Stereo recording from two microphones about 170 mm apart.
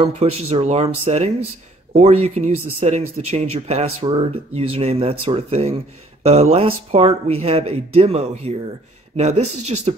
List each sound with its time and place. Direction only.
0.0 s speech: 35° right (ahead or behind)